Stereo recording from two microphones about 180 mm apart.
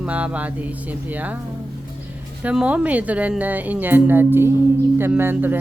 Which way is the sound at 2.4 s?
5° right (ahead or behind).